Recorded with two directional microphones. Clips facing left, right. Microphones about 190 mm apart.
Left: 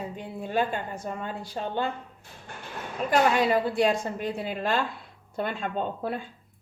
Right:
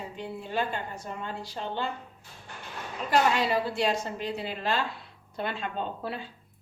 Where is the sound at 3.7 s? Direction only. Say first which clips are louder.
Left 4 dB; 50° left (ahead or behind).